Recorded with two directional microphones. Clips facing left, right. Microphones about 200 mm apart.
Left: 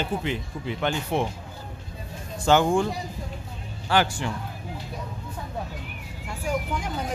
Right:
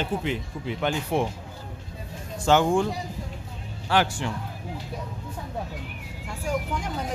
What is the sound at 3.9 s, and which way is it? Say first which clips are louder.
Speech: even; centre (ahead or behind).